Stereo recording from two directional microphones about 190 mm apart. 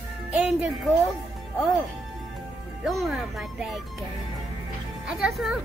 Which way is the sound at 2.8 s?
Centre (ahead or behind).